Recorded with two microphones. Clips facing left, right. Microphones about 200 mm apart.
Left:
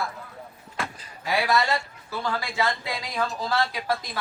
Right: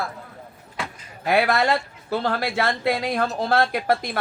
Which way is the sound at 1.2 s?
55° right (ahead or behind).